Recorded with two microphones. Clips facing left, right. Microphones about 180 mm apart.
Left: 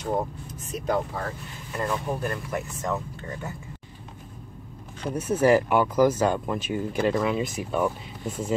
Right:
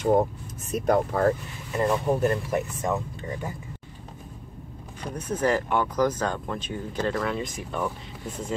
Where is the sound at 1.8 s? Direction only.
20° right (ahead or behind).